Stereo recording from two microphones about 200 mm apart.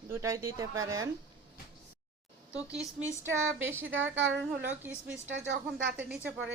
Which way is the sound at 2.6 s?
5° right (ahead or behind).